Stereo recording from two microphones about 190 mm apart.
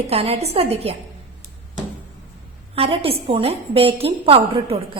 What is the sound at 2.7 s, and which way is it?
A woman's voice, 30° right (ahead or behind).